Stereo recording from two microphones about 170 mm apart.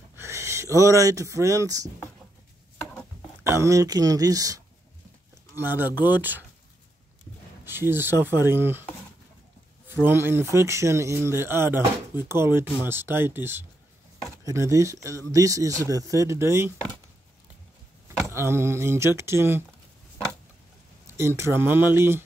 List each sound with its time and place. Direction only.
0.1 s speech: 15° right (ahead or behind)
3.4 s speech: 15° right (ahead or behind)
7.6 s speech: 15° right (ahead or behind)
10.0 s speech: 15° right (ahead or behind)
18.2 s speech: 15° right (ahead or behind)
21.2 s speech: 15° right (ahead or behind)